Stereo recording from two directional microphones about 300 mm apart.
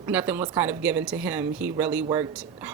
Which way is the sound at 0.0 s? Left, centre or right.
Centre.